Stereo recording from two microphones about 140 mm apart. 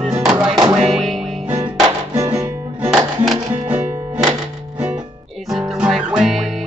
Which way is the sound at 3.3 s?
45° right (ahead or behind).